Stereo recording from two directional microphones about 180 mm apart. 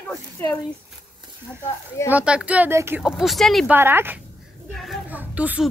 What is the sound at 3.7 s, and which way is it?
Speech, 10° right (ahead or behind).